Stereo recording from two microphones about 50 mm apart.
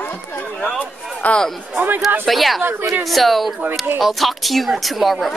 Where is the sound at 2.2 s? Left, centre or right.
Centre.